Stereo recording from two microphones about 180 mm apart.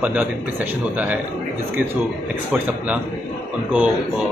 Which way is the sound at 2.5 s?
10° right (ahead or behind).